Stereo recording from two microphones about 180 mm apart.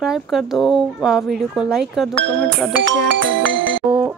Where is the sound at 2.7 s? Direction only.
85° right.